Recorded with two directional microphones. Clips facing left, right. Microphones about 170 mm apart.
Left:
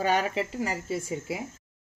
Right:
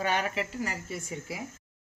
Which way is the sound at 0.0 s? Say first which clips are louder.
Left 4 dB; 35° left (ahead or behind).